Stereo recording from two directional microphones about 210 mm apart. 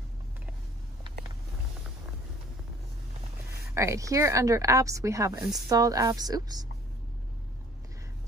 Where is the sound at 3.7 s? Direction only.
15° right (ahead or behind).